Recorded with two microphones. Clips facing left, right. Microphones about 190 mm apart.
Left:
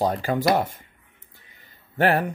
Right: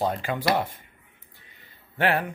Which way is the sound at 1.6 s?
40° left (ahead or behind).